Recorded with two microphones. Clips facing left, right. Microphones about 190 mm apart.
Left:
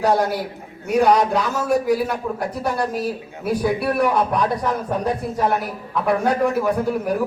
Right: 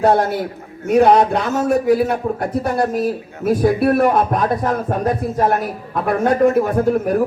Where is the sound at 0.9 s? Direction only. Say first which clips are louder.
Right 4 dB; 55° right (ahead or behind).